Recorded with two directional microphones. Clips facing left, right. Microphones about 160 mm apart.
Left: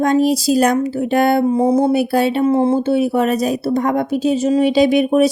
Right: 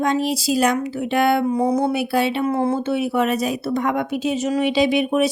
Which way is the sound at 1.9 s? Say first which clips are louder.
Left 5 dB; 40° left (ahead or behind).